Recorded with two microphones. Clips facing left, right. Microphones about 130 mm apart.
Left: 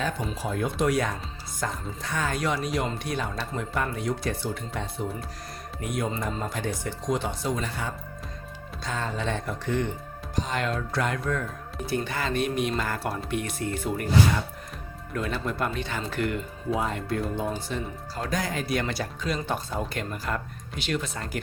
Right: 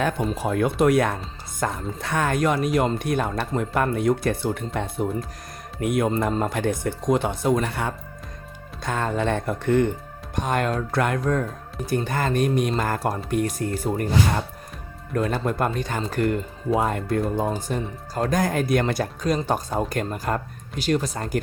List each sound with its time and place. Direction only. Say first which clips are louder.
0.3 s speech: right 6 dB; 65° right (ahead or behind); by 21.4 s 40° right (ahead or behind)